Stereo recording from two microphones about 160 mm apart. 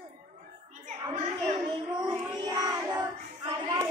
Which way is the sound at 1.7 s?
30° right (ahead or behind).